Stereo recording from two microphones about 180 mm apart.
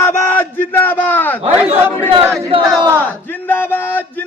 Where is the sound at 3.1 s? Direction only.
10° left (ahead or behind).